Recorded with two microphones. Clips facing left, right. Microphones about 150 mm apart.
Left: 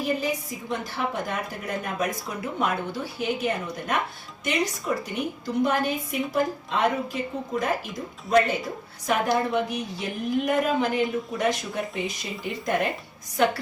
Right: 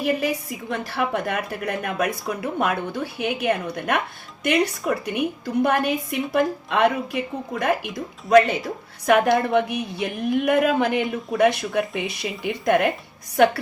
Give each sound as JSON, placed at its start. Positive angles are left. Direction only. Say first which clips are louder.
{"t": 0.0, "sound": "a woman's voice", "louder": "right 3 dB", "side_deg": -70}
{"t": 9.0, "sound": "a woman's voice", "louder": "right 6 dB", "side_deg": -65}